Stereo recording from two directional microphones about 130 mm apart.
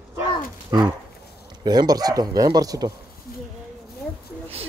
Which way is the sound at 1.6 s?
30° right (ahead or behind).